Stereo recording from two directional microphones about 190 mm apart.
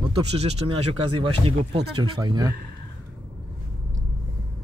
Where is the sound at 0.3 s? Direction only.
35° right (ahead or behind).